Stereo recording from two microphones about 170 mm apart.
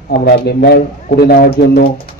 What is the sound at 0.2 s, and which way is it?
A man's voice, 70° left (ahead or behind).